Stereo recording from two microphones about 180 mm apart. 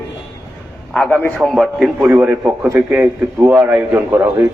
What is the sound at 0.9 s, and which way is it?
A man's voice, 10° left (ahead or behind).